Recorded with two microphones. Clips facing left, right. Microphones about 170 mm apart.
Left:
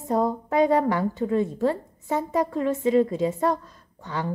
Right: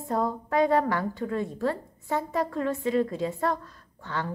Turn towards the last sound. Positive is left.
turn(degrees=15)  # may be behind; listen again after turning